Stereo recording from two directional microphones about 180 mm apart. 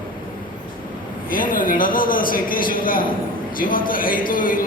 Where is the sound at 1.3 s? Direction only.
50° left (ahead or behind).